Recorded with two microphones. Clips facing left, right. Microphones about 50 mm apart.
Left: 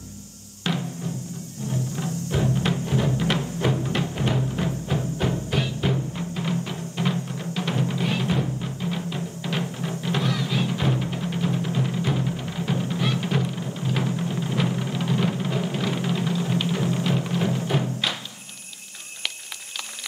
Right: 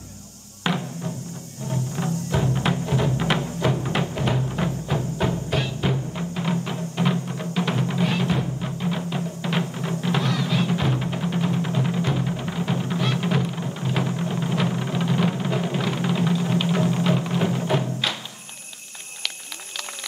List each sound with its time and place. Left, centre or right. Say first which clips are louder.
0.7 s music: right 2 dB; right